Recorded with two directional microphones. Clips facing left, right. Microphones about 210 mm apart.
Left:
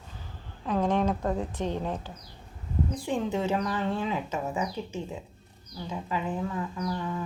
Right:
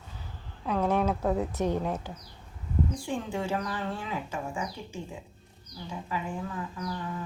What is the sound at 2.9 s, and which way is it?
A woman's voice, 20° left (ahead or behind).